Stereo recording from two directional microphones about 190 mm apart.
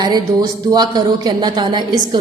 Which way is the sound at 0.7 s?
20° right (ahead or behind).